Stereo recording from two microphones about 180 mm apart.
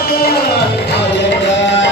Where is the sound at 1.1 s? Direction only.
75° left (ahead or behind).